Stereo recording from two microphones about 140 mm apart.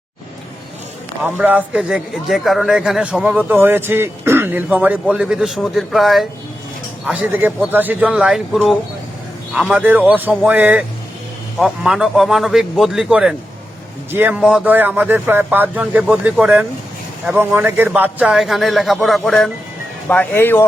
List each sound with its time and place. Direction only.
1.2 s a man's voice: 10° right (ahead or behind)
7.1 s a man's voice: 10° right (ahead or behind)
20.1 s speech: 15° left (ahead or behind)